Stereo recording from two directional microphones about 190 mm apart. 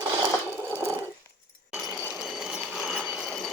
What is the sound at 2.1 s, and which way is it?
Ratchet, centre (ahead or behind).